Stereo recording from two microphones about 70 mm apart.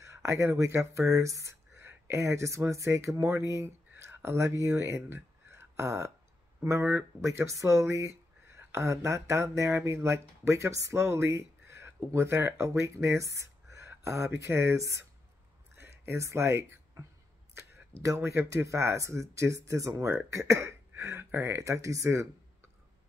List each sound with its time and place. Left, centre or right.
0.0 s speech: right
3.4 s speech: right
6.8 s speech: right
7.4 s speech: right
15.7 s a sound: right
18.0 s speech: right